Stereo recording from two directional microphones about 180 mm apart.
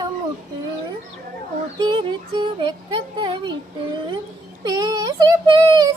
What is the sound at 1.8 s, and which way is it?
Speech, 25° right (ahead or behind).